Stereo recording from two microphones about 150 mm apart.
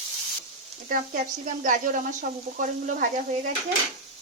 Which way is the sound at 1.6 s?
60° right (ahead or behind).